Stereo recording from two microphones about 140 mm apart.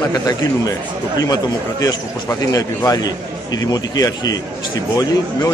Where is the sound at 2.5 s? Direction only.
25° left (ahead or behind).